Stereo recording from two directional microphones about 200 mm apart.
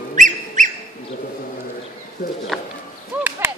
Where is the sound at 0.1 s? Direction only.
40° right (ahead or behind).